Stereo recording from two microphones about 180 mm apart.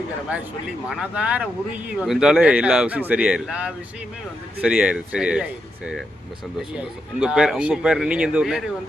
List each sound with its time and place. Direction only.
0.9 s speech: 5° right (ahead or behind)